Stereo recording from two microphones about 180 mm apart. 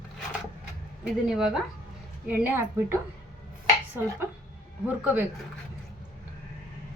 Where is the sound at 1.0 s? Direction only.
5° right (ahead or behind).